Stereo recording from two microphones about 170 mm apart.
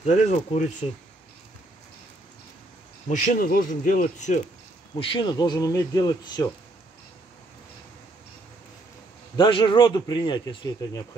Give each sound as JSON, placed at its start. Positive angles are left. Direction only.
{"t": 0.0, "sound": "speech", "side_deg": 40}
{"t": 3.1, "sound": "speech", "side_deg": 45}
{"t": 4.9, "sound": "speech", "side_deg": 30}
{"t": 9.4, "sound": "speech", "side_deg": 30}